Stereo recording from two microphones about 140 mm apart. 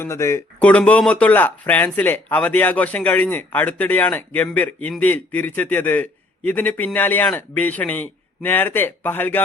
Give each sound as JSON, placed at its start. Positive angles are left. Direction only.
{"t": 0.0, "sound": "speech", "side_deg": 20}
{"t": 0.6, "sound": "speech", "side_deg": 10}